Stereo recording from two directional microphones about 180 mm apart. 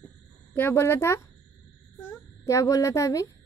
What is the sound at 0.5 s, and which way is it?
A child's voice, 15° left (ahead or behind).